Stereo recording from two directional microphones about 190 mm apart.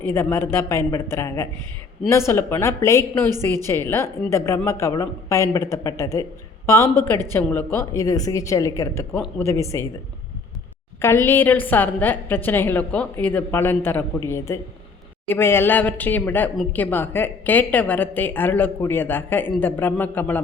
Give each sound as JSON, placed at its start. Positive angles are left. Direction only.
{"t": 0.1, "sound": "speech", "side_deg": 15}
{"t": 11.0, "sound": "speech", "side_deg": 10}